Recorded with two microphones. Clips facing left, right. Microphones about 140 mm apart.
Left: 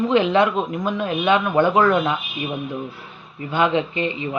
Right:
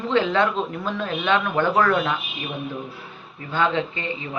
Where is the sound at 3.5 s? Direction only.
15° left (ahead or behind).